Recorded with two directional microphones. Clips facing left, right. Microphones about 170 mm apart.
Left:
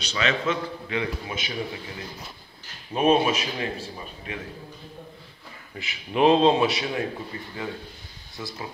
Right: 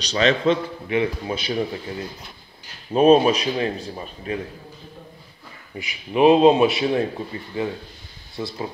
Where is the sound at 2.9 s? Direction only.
30° right (ahead or behind).